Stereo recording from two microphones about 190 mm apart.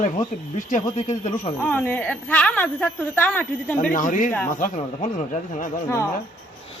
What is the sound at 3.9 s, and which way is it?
Speech, 45° left (ahead or behind).